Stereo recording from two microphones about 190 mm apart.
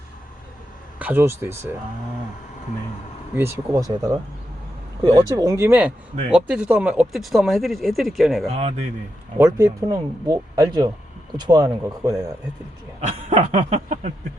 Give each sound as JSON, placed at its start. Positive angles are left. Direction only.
{"t": 0.9, "sound": "speech", "side_deg": -10}
{"t": 3.3, "sound": "speech", "side_deg": -15}
{"t": 8.4, "sound": "snicker", "side_deg": -30}
{"t": 9.4, "sound": "speech", "side_deg": -15}
{"t": 13.1, "sound": "snicker", "side_deg": -40}